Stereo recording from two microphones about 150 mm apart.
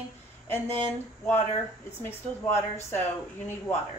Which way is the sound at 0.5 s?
15° left (ahead or behind).